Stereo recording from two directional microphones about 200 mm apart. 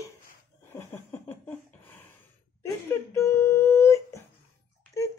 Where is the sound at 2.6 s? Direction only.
15° left (ahead or behind).